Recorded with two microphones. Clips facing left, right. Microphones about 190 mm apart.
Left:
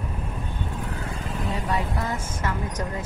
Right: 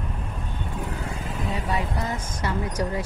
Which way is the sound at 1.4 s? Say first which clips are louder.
Even; centre (ahead or behind).